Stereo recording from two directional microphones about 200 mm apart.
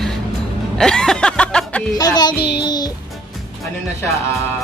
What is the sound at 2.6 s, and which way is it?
Music, 20° left (ahead or behind).